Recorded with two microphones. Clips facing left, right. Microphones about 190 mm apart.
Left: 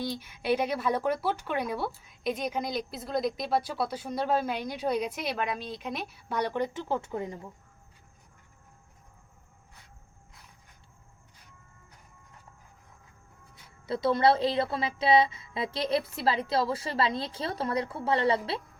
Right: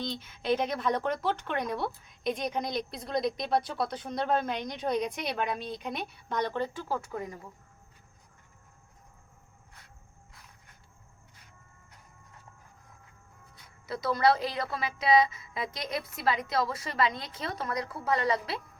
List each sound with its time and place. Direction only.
0.0 s speech: 10° left (ahead or behind)
13.8 s a woman's voice: 25° left (ahead or behind)